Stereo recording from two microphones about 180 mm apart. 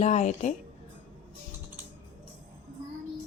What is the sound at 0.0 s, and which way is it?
Speech, 40° left (ahead or behind).